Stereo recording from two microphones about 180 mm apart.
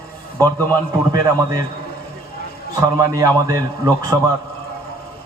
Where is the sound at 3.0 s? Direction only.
20° right (ahead or behind).